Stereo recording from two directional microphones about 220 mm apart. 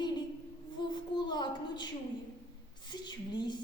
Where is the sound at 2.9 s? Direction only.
20° left (ahead or behind).